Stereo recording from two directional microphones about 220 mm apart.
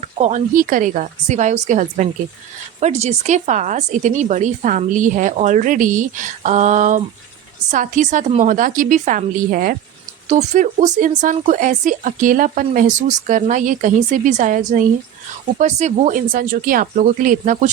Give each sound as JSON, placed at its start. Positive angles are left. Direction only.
{"t": 0.0, "sound": "speech", "side_deg": -30}